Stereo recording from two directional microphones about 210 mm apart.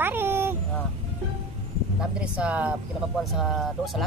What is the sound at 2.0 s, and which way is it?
Speech, 5° right (ahead or behind).